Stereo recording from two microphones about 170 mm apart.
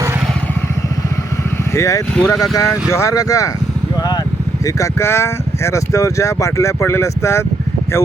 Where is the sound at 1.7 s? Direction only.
15° left (ahead or behind).